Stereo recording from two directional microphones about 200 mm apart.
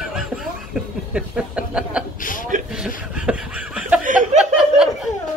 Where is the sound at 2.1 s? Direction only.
40° left (ahead or behind).